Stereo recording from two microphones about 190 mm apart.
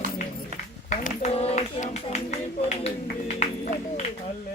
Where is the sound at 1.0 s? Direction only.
35° left (ahead or behind).